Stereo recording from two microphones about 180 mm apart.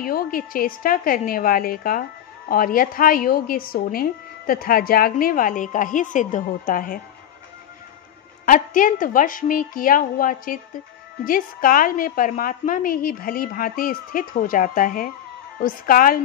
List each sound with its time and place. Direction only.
0.0 s a woman's voice: 55° left (ahead or behind)
8.5 s a woman's voice: 50° left (ahead or behind)